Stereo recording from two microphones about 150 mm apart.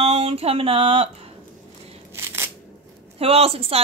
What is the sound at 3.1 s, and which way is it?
Speech, 40° right (ahead or behind).